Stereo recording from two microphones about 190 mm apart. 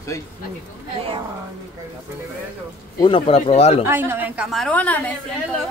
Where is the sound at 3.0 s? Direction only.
25° left (ahead or behind).